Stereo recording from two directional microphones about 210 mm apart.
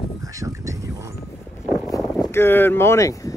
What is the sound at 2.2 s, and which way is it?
Speech, 10° left (ahead or behind).